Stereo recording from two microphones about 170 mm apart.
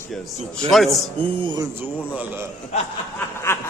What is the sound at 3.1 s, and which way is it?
Snicker, 15° left (ahead or behind).